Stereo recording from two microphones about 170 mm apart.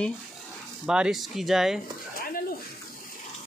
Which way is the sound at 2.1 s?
60° left (ahead or behind).